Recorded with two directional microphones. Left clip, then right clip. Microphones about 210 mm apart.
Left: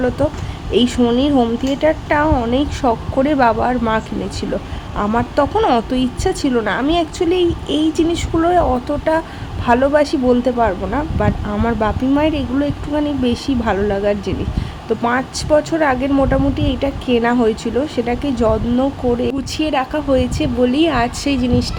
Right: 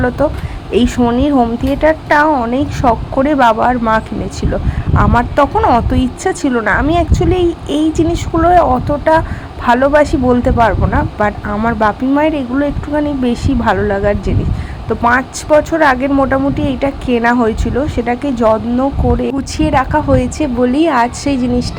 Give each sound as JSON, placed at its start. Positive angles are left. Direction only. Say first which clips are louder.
{"t": 0.2, "sound": "speech", "louder": "right 4 dB", "side_deg": -5}